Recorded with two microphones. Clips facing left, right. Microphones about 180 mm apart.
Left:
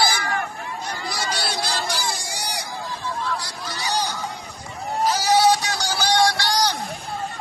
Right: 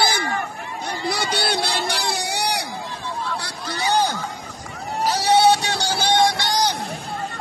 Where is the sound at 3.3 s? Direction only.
60° right (ahead or behind).